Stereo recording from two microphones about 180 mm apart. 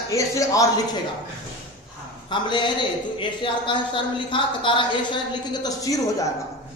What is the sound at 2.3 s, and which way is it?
A woman's voice, 25° left (ahead or behind).